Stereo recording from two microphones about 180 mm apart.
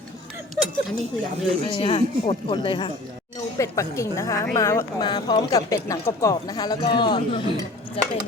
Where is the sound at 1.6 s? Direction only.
30° left (ahead or behind).